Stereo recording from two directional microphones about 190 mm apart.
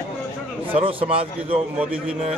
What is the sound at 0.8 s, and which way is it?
Speech, 30° right (ahead or behind).